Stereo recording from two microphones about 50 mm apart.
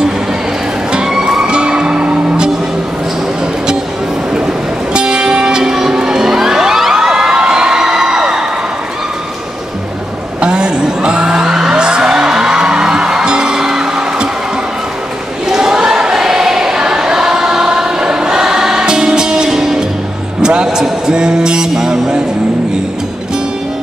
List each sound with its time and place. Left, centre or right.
0.9 s music: centre
4.9 s music: centre
10.4 s music: centre
15.4 s choir: centre
20.4 s a sound: centre